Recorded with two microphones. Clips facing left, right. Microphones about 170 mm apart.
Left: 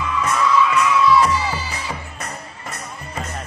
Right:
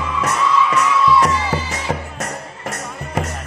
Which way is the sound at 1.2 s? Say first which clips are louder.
Right 2 dB; 75° right (ahead or behind).